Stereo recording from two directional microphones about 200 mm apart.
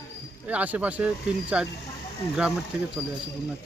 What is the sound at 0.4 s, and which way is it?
Speech, 5° right (ahead or behind).